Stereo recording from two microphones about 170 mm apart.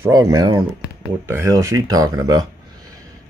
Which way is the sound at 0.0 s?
20° right (ahead or behind).